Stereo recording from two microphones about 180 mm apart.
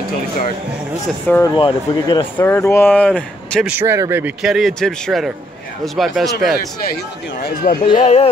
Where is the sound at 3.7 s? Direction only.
15° right (ahead or behind).